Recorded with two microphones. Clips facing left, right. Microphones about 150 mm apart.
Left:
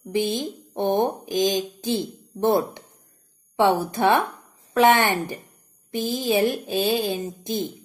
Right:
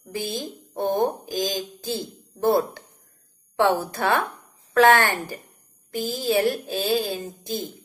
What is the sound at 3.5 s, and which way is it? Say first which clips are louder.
Speech: left 1 dB; 15° left (ahead or behind).